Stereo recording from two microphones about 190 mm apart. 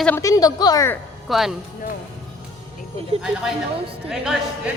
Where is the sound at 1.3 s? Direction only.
Centre (ahead or behind).